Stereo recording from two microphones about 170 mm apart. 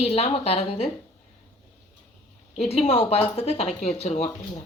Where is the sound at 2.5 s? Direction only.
35° left (ahead or behind).